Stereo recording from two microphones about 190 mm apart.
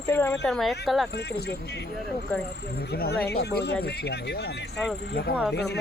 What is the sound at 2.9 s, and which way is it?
Speech, 55° left (ahead or behind).